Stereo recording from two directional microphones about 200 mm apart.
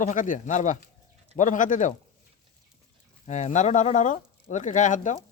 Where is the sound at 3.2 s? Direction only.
35° left (ahead or behind).